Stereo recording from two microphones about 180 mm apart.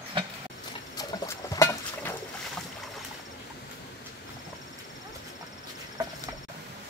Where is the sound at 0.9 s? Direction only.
15° left (ahead or behind).